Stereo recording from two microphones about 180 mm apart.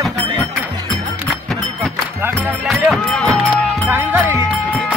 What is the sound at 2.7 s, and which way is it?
Music, centre (ahead or behind).